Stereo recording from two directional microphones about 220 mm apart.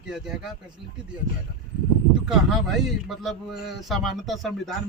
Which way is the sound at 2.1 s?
5° right (ahead or behind).